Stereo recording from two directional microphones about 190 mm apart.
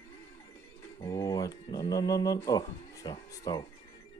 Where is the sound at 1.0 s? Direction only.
15° left (ahead or behind).